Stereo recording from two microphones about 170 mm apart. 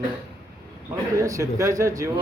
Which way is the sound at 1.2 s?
20° right (ahead or behind).